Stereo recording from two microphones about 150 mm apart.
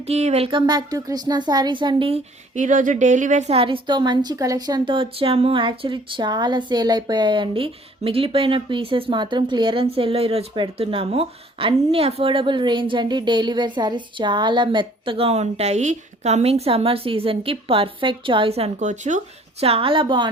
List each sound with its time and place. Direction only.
0.0 s speech: 45° right (ahead or behind)
2.6 s a woman's voice: 60° right (ahead or behind); by 20.2 s 35° right (ahead or behind)